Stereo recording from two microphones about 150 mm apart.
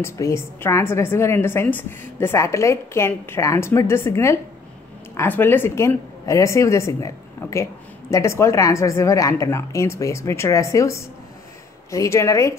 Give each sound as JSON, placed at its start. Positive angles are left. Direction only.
{"t": 0.0, "sound": "a woman's voice", "side_deg": 20}